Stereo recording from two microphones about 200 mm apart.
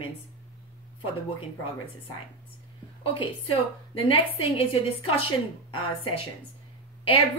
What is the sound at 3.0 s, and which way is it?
A woman's voice, 25° left (ahead or behind).